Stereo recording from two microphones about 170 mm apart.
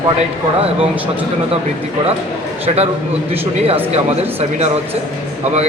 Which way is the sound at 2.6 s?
35° right (ahead or behind).